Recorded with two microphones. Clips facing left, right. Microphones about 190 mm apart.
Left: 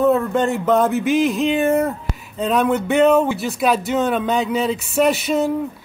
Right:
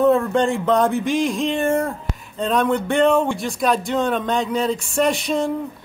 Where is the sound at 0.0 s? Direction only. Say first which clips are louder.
Even; 5° left (ahead or behind).